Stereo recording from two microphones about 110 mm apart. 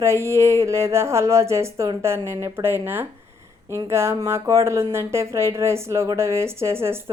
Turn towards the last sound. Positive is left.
turn(degrees=-25)  # may be behind; listen again after turning